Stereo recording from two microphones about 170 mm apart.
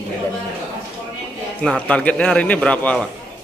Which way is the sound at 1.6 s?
5° left (ahead or behind).